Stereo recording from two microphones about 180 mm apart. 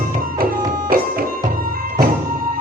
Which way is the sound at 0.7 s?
55° right (ahead or behind).